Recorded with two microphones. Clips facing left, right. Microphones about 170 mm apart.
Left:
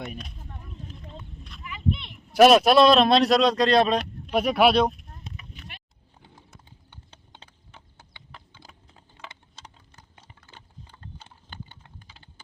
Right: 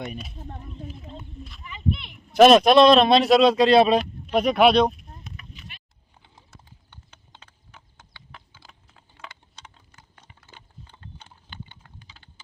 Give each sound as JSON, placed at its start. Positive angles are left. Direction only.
{"t": 0.0, "sound": "speech", "side_deg": 0}
{"t": 2.0, "sound": "speech", "side_deg": 0}
{"t": 4.3, "sound": "speech", "side_deg": 5}
{"t": 5.5, "sound": "vehicle", "side_deg": 55}
{"t": 8.6, "sound": "typing", "side_deg": 35}
{"t": 9.6, "sound": "a sound", "side_deg": 0}
{"t": 11.4, "sound": "typing", "side_deg": 45}